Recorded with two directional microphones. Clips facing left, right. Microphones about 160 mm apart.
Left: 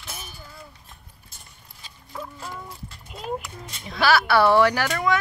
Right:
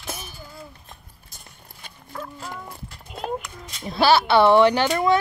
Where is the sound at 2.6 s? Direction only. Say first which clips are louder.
Right 1 dB; 55° right (ahead or behind).